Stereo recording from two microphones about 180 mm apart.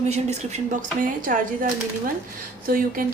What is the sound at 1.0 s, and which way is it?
Speech, 50° right (ahead or behind).